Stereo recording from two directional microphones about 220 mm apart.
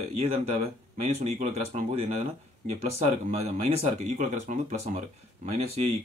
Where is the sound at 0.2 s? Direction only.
30° right (ahead or behind).